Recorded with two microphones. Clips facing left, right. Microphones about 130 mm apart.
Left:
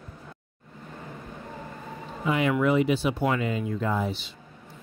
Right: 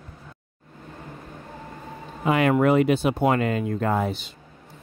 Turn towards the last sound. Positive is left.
turn(degrees=-55)  # may be behind; listen again after turning